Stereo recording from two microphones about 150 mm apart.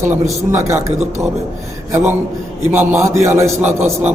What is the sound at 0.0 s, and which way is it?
A man's voice, 20° right (ahead or behind).